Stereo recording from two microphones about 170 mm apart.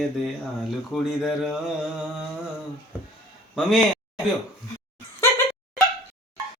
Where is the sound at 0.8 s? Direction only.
Centre (ahead or behind).